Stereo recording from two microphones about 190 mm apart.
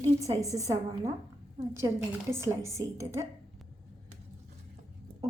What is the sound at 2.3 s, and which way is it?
Speech, 15° right (ahead or behind).